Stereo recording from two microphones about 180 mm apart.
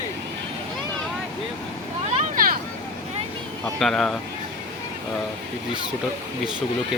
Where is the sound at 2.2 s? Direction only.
50° right (ahead or behind).